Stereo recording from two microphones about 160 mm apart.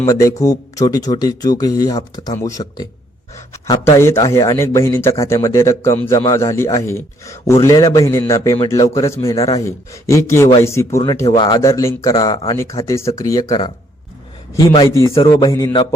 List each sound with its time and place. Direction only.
0.0 s a man's voice: 20° left (ahead or behind)
15.1 s a man's voice: 35° left (ahead or behind)
15.4 s speech: 20° left (ahead or behind)